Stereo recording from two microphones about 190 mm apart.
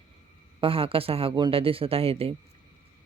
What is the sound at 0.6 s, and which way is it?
Speech, 30° right (ahead or behind).